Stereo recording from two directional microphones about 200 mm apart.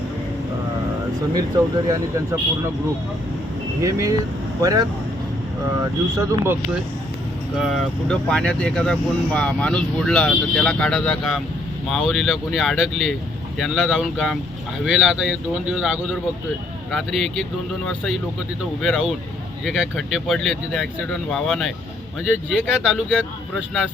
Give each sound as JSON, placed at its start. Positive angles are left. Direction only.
{"t": 1.3, "sound": "speech", "side_deg": -15}
{"t": 3.8, "sound": "speech", "side_deg": -15}
{"t": 6.1, "sound": "speech", "side_deg": -15}
{"t": 7.6, "sound": "speech", "side_deg": 0}
{"t": 18.8, "sound": "speech", "side_deg": 0}